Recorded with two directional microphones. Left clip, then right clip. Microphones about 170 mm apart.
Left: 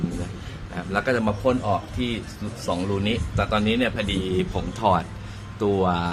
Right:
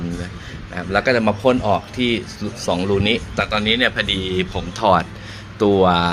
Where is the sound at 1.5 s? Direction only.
25° right (ahead or behind).